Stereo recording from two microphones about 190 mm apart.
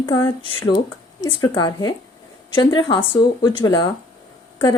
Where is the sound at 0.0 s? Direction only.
25° left (ahead or behind).